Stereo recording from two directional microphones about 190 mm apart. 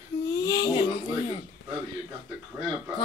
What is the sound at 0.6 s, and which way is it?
Speech, 25° left (ahead or behind).